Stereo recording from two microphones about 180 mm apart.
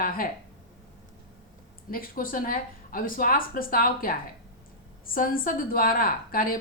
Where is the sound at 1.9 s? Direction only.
50° left (ahead or behind).